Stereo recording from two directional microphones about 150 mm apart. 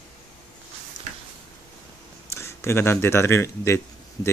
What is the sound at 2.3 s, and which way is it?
Speech, 20° left (ahead or behind).